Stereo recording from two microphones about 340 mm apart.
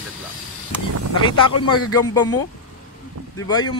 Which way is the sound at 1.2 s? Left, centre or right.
Centre.